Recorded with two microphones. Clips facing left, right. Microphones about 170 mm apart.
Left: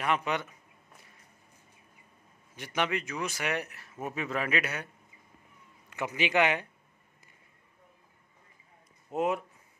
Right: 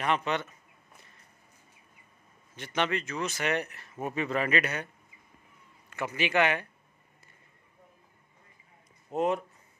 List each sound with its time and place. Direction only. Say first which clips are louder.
0.0 s speech: right 1 dB; 10° left (ahead or behind)
2.5 s speech: right 1 dB; 10° left (ahead or behind)
5.9 s speech: even; 15° left (ahead or behind)
9.1 s speech: right 1 dB; 5° left (ahead or behind)